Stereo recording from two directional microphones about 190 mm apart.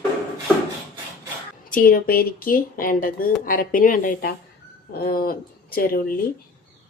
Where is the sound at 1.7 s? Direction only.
50° left (ahead or behind).